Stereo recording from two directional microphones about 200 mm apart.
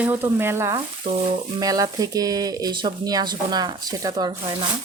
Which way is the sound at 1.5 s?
20° right (ahead or behind).